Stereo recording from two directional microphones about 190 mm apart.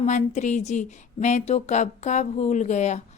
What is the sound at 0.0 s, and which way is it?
Speech, 40° left (ahead or behind).